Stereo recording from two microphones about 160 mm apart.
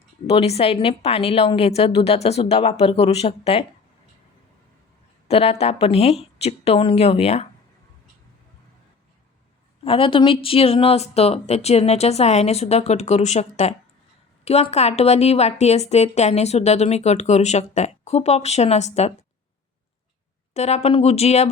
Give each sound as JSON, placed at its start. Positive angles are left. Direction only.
{"t": 0.3, "sound": "a woman's voice", "side_deg": 40}
{"t": 5.3, "sound": "a woman's voice", "side_deg": 40}
{"t": 9.8, "sound": "a woman's voice", "side_deg": 35}
{"t": 20.5, "sound": "a woman's voice", "side_deg": 40}